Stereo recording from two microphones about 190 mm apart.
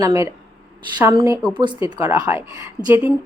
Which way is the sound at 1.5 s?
25° right (ahead or behind).